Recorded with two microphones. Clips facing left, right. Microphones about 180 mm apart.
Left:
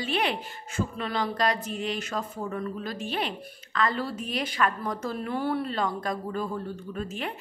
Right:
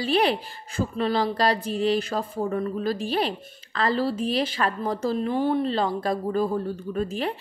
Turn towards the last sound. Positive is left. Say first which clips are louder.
# right 6 dB
turn(degrees=-35)  # may be behind; listen again after turning